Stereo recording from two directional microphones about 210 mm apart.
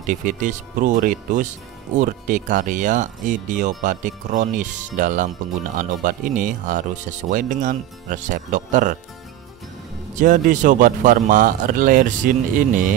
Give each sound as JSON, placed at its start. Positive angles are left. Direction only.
{"t": 0.0, "sound": "speech", "side_deg": -40}
{"t": 10.1, "sound": "speech", "side_deg": -40}